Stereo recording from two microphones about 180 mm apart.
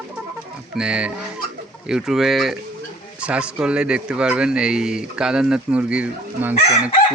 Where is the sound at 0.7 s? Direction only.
5° right (ahead or behind).